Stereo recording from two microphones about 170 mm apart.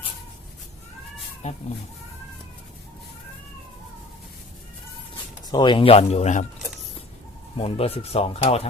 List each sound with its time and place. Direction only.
1.4 s speech: 40° left (ahead or behind)
5.5 s speech: 25° left (ahead or behind); by 6.5 s 40° left (ahead or behind)
7.5 s speech: 35° left (ahead or behind)